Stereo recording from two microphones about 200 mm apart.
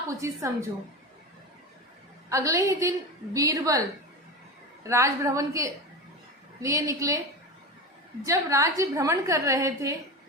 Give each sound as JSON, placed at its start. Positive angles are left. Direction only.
{"t": 0.1, "sound": "a woman's voice", "side_deg": -15}
{"t": 2.3, "sound": "a woman's voice", "side_deg": -15}
{"t": 8.2, "sound": "a woman's voice", "side_deg": -15}